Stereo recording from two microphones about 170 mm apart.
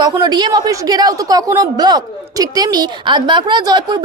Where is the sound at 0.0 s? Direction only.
25° right (ahead or behind).